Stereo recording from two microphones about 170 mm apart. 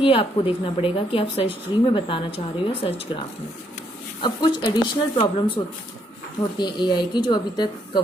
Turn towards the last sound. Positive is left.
turn(degrees=25)  # may be behind; listen again after turning